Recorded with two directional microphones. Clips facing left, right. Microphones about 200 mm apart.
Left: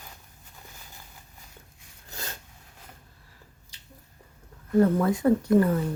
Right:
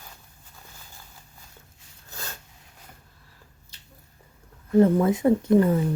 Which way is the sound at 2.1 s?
20° left (ahead or behind).